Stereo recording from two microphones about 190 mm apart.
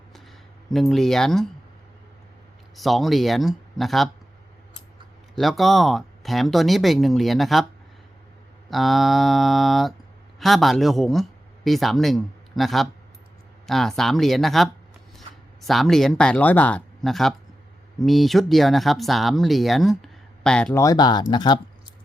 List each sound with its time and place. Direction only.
0.7 s speech: centre (ahead or behind)
2.7 s speech: centre (ahead or behind)
5.3 s speech: centre (ahead or behind)
8.7 s speech: centre (ahead or behind)
20.7 s speech: 20° left (ahead or behind)